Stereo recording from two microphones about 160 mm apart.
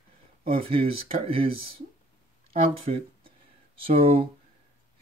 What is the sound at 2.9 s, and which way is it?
Speech, 40° right (ahead or behind).